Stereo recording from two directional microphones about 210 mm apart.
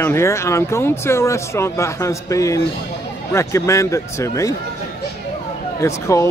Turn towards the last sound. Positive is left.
turn(degrees=15)  # may be behind; listen again after turning